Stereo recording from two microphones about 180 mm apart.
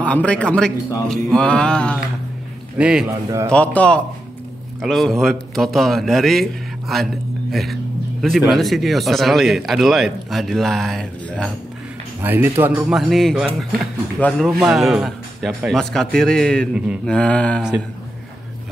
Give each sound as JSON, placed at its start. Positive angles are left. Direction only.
{"t": 0.0, "sound": "a man's voice", "side_deg": 5}
{"t": 3.3, "sound": "speech", "side_deg": -15}
{"t": 3.5, "sound": "a man's voice", "side_deg": 5}
{"t": 8.5, "sound": "speech", "side_deg": 0}
{"t": 12.2, "sound": "speech", "side_deg": -10}
{"t": 13.1, "sound": "a man's voice", "side_deg": 0}
{"t": 14.6, "sound": "speech", "side_deg": 0}
{"t": 17.1, "sound": "a man's voice", "side_deg": 5}
{"t": 17.6, "sound": "speech", "side_deg": -5}